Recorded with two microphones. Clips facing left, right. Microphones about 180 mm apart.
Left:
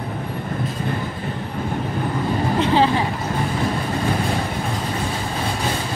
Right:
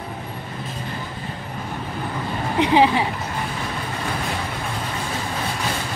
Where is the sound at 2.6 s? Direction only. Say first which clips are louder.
Right 2 dB; 15° right (ahead or behind).